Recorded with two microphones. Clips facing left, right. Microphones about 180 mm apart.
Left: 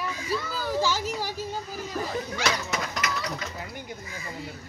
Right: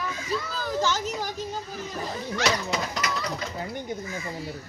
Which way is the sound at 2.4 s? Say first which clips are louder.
Right 4 dB; 30° right (ahead or behind).